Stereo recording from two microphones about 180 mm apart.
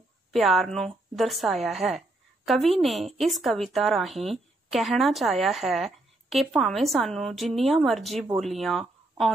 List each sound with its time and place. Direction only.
0.3 s a woman's voice: centre (ahead or behind)